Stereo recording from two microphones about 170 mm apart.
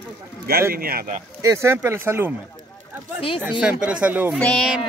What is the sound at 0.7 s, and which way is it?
Speech, 60° right (ahead or behind).